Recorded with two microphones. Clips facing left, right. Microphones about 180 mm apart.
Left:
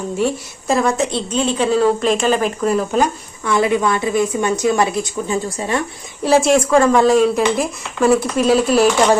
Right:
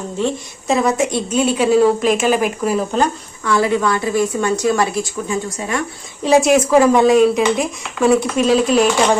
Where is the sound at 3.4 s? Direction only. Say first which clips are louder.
Even; 20° left (ahead or behind).